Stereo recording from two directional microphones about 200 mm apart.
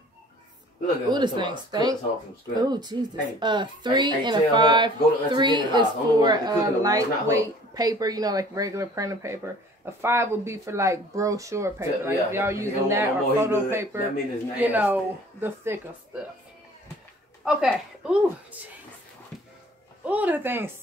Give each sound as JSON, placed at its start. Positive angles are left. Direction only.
{"t": 1.1, "sound": "a woman's voice", "side_deg": -20}
{"t": 17.5, "sound": "speech", "side_deg": -5}
{"t": 20.1, "sound": "speech", "side_deg": -10}